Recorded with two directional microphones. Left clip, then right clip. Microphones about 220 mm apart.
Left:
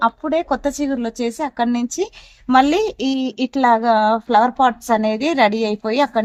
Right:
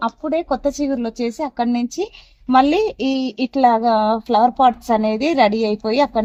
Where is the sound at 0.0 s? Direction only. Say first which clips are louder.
Left 3 dB; 25° right (ahead or behind).